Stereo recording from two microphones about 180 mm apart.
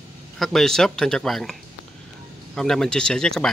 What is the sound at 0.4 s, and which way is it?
Speech, centre (ahead or behind).